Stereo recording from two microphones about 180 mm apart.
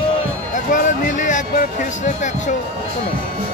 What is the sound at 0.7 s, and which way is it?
Speech, 45° left (ahead or behind).